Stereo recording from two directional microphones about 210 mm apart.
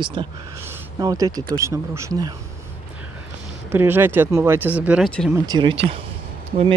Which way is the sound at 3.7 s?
10° right (ahead or behind).